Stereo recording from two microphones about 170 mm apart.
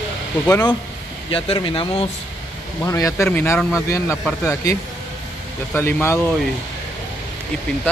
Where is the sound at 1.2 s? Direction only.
30° left (ahead or behind).